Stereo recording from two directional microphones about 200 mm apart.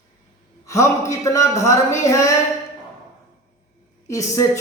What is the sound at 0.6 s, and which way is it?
A man's voice, 15° left (ahead or behind).